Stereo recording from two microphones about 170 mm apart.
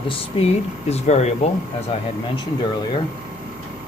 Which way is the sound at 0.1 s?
35° left (ahead or behind).